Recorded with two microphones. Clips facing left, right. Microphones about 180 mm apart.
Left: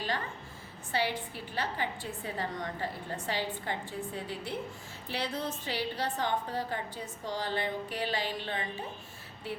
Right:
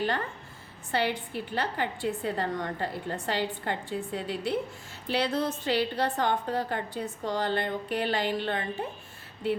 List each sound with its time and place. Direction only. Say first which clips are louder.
0.9 s a woman's voice: right 4 dB; 60° right (ahead or behind)